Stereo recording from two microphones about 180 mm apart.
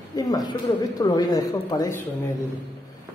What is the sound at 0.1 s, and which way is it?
Speech, 20° left (ahead or behind).